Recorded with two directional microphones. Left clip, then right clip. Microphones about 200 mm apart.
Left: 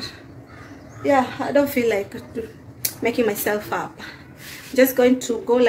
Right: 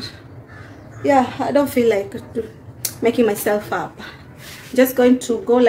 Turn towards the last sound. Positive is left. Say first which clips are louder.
# right 3 dB
turn(degrees=-5)  # may be behind; listen again after turning